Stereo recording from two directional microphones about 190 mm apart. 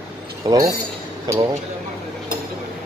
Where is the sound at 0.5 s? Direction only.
20° right (ahead or behind).